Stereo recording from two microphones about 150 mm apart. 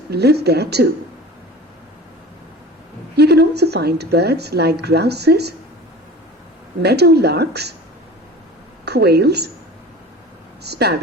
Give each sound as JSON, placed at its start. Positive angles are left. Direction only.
{"t": 0.1, "sound": "speech", "side_deg": -90}
{"t": 3.2, "sound": "speech", "side_deg": -90}
{"t": 6.8, "sound": "speech", "side_deg": -90}
{"t": 8.8, "sound": "a woman's voice", "side_deg": -90}
{"t": 10.6, "sound": "speech", "side_deg": -90}